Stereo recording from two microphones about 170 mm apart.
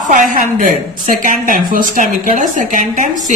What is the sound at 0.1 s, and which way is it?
A man's voice, 50° right (ahead or behind).